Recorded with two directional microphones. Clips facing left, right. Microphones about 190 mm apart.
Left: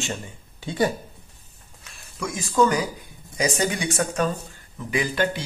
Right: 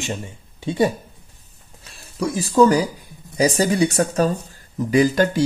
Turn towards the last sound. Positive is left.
turn(degrees=-40)  # may be behind; listen again after turning